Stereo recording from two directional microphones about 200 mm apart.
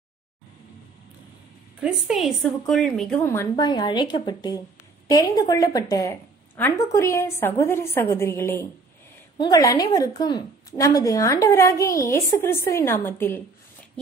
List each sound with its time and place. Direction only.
1.8 s a woman's voice: 5° right (ahead or behind)